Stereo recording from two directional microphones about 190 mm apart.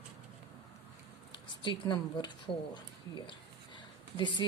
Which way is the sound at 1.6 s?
25° left (ahead or behind).